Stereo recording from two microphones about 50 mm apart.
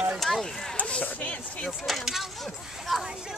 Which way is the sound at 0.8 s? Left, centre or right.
Left.